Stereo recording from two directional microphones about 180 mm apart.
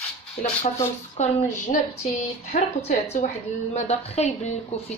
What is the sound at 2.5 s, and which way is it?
A woman's voice, 35° left (ahead or behind).